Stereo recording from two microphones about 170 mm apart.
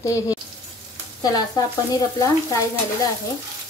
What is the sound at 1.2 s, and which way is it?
Frying, 20° left (ahead or behind).